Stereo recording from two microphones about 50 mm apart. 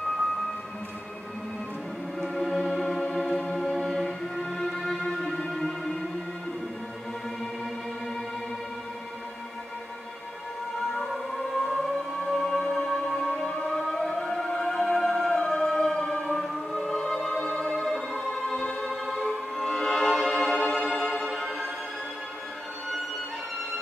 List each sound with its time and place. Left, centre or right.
2.3 s music: centre
3.6 s music: centre
3.9 s music: centre
10.9 s siren: centre
12.3 s music: centre
17.7 s music: centre